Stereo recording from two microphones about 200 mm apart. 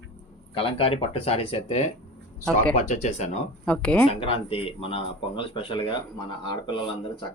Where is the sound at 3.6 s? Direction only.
5° left (ahead or behind).